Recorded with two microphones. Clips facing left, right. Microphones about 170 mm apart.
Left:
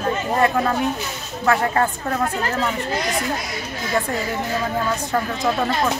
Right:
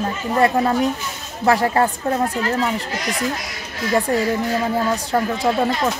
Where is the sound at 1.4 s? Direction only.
30° right (ahead or behind).